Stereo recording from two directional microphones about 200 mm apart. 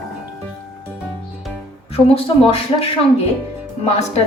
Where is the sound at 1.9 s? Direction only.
30° left (ahead or behind).